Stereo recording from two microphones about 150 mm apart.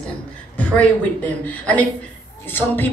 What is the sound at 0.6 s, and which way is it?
Speech, 10° left (ahead or behind).